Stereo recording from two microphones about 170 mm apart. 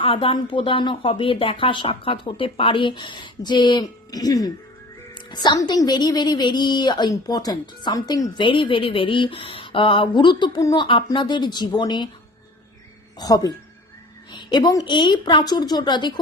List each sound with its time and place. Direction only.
0.0 s a woman's voice: 30° left (ahead or behind)
13.1 s a woman's voice: 20° left (ahead or behind)